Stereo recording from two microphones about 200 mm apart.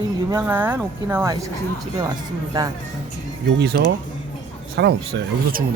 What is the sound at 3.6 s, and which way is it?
Speech, 50° right (ahead or behind).